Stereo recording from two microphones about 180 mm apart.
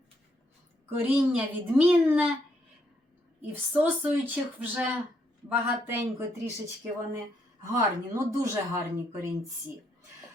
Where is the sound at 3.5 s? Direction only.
10° right (ahead or behind).